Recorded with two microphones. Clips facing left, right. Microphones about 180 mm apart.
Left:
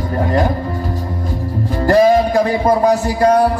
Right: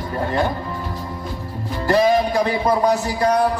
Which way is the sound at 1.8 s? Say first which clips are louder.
Left 5 dB; 45° left (ahead or behind).